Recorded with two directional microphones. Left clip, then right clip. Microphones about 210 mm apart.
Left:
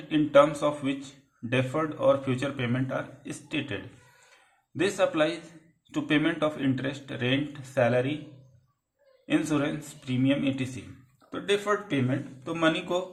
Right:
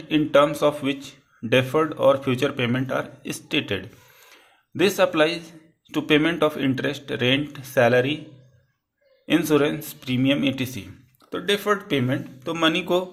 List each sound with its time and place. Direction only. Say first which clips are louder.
0.1 s speech: right 2 dB; 30° right (ahead or behind)
4.8 s speech: right 6 dB; 35° right (ahead or behind)
9.2 s speech: right 7 dB; 35° right (ahead or behind)